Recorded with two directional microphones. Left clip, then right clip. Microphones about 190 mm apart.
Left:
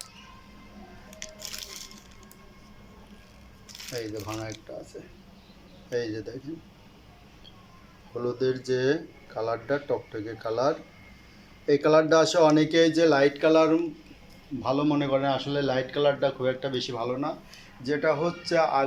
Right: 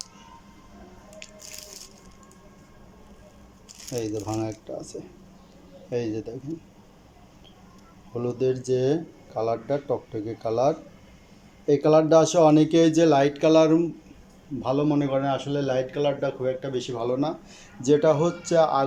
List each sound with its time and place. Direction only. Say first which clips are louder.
4.2 s speech: right 5 dB; 25° right (ahead or behind)
5.9 s speech: right 2 dB; 20° right (ahead or behind)
8.1 s speech: right 2 dB; 15° right (ahead or behind)
11.6 s speech: right 2 dB; 15° right (ahead or behind)